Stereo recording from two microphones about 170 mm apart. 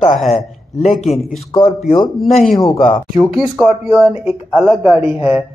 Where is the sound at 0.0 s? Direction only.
45° left (ahead or behind).